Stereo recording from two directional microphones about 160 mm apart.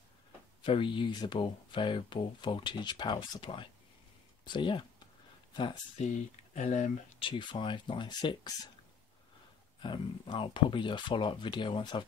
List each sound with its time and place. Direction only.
0.6 s speech: 30° left (ahead or behind)
6.0 s speech: 45° left (ahead or behind)
7.2 s speech: 30° left (ahead or behind)
9.8 s speech: 30° left (ahead or behind)